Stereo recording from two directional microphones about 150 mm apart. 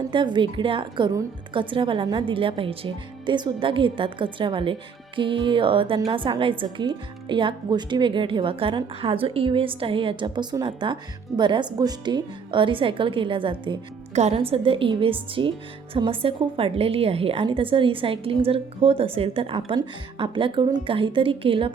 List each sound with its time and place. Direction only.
0.1 s a woman's voice: 30° right (ahead or behind)